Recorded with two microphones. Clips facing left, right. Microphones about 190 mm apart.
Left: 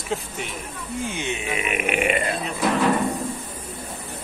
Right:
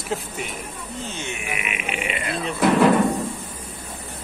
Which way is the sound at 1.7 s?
60° left (ahead or behind).